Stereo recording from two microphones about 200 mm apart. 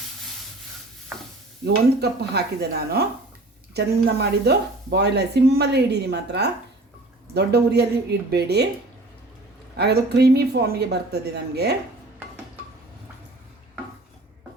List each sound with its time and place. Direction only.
1.6 s speech: 55° right (ahead or behind)
4.2 s speech: 55° right (ahead or behind)
9.7 s speech: 55° right (ahead or behind)